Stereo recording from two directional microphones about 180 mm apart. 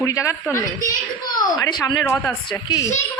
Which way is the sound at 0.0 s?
15° left (ahead or behind).